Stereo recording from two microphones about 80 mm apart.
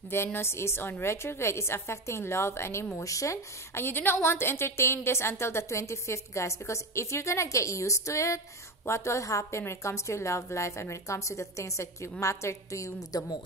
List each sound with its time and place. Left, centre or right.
0.1 s a woman's voice: left